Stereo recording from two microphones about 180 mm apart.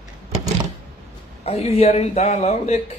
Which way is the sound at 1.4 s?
35° left (ahead or behind).